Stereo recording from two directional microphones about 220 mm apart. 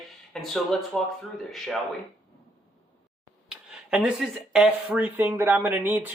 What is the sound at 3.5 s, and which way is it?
Speech, 5° right (ahead or behind).